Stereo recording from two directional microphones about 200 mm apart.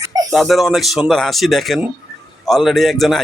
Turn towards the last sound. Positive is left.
turn(degrees=0)  # may be behind; listen again after turning